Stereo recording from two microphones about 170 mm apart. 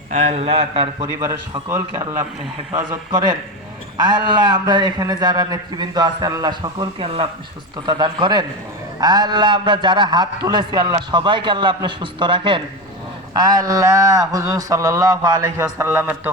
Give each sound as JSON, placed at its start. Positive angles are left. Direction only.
{"t": 0.1, "sound": "a man's voice", "side_deg": -40}
{"t": 1.2, "sound": "a man's voice", "side_deg": -20}